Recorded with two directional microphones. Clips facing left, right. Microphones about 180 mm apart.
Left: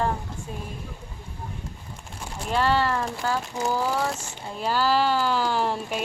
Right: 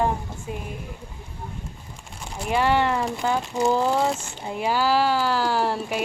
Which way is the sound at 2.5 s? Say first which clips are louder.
Right 2 dB; 15° right (ahead or behind).